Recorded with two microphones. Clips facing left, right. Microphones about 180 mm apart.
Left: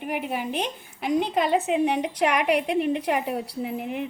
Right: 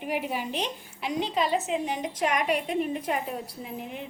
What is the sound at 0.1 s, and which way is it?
A woman's voice, 55° left (ahead or behind).